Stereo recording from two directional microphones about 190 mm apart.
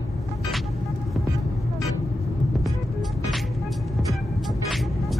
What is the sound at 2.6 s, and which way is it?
Music, centre (ahead or behind).